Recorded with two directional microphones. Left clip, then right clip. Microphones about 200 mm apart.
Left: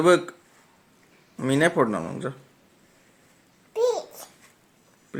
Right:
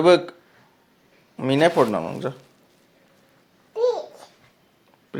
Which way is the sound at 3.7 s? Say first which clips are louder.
Right 2 dB; 20° left (ahead or behind).